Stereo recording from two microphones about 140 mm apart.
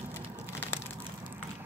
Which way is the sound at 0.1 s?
20° left (ahead or behind).